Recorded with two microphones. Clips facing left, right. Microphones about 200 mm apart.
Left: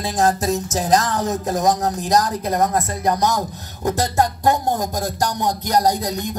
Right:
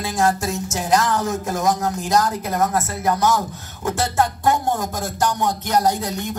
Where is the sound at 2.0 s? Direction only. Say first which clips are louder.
Left 1 dB; 20° left (ahead or behind).